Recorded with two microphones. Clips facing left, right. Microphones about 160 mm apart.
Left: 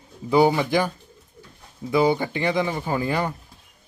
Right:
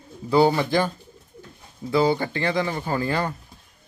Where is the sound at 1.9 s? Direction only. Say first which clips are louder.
Left 1 dB; 15° left (ahead or behind).